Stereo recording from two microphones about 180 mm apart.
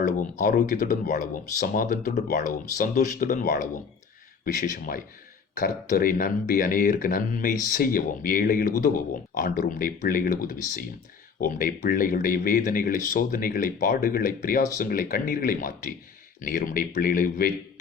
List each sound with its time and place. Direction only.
0.0 s speech: 45° left (ahead or behind)